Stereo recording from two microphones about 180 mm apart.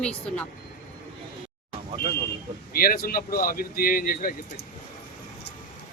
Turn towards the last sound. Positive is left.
turn(degrees=50)  # may be behind; listen again after turning